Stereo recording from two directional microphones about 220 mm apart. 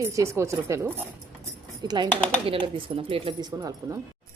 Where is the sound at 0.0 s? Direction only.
10° right (ahead or behind).